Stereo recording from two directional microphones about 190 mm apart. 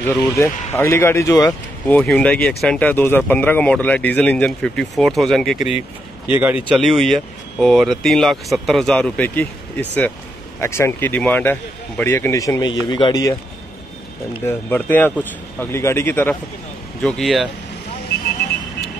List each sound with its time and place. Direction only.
0.0 s speech: 10° left (ahead or behind)
2.0 s speech: 5° left (ahead or behind)
10.6 s a man's voice: 15° left (ahead or behind)
14.4 s speech: 10° left (ahead or behind)
17.0 s speech: centre (ahead or behind)